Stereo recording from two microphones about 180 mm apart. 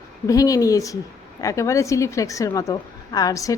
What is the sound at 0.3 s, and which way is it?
A woman's voice, 20° left (ahead or behind).